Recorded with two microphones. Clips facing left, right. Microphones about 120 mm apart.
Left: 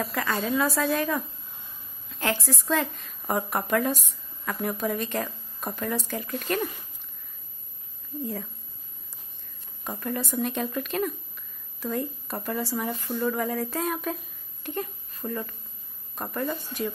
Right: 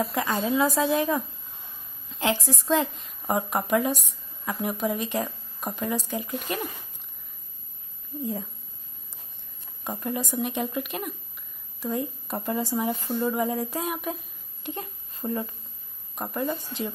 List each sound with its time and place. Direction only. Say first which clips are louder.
0.0 s a woman's voice: right 2 dB; 20° right (ahead or behind)
8.2 s a woman's voice: right 2 dB; 15° right (ahead or behind)
9.8 s a woman's voice: right 1 dB; 20° right (ahead or behind)
14.6 s a sound: left 3 dB; 20° right (ahead or behind)
16.2 s a woman's voice: right 1 dB; 15° right (ahead or behind)